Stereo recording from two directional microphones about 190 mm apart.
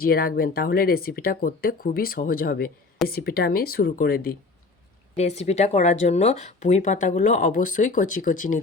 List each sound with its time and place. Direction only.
0.0 s speech: 50° left (ahead or behind)
5.1 s speech: 35° left (ahead or behind)